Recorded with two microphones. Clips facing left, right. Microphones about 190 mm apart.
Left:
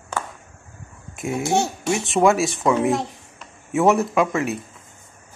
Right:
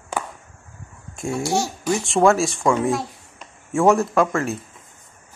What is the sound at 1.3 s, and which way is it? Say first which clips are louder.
Speech: left 1 dB; 20° left (ahead or behind).